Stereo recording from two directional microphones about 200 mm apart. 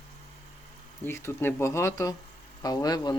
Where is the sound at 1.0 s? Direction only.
10° left (ahead or behind).